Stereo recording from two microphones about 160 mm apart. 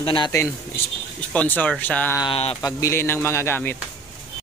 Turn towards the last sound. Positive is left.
turn(degrees=15)  # may be behind; listen again after turning